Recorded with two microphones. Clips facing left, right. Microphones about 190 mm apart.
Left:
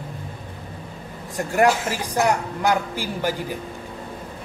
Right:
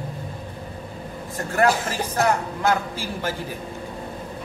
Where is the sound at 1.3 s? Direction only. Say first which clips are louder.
Left 2 dB; 15° left (ahead or behind).